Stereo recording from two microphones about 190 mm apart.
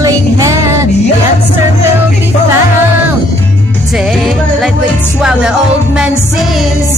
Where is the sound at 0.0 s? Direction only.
15° right (ahead or behind).